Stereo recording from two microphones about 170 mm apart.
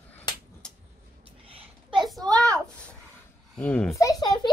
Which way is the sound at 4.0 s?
20° left (ahead or behind).